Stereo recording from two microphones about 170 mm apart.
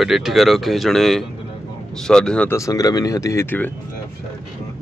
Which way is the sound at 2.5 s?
20° left (ahead or behind).